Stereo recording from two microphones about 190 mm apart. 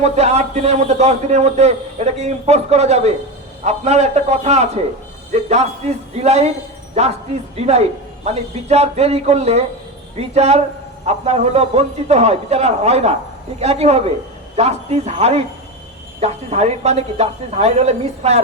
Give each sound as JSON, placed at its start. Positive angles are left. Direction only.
{"t": 0.0, "sound": "a man's voice", "side_deg": -35}
{"t": 7.5, "sound": "a man's voice", "side_deg": -35}